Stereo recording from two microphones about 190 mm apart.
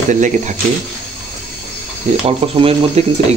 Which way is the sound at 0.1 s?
40° right (ahead or behind).